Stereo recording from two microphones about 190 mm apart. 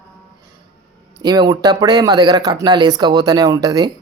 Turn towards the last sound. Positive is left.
turn(degrees=-20)  # may be behind; listen again after turning